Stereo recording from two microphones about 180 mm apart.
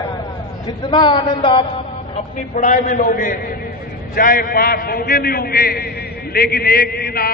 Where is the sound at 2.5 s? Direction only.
45° left (ahead or behind).